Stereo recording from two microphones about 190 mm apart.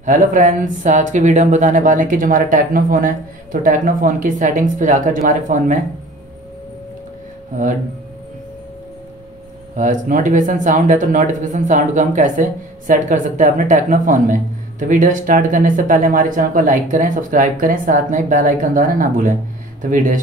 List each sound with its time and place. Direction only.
0.0 s speech: 40° right (ahead or behind)
9.8 s speech: 40° right (ahead or behind)